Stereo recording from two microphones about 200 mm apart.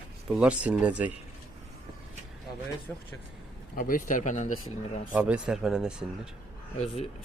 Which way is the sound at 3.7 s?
45° left (ahead or behind).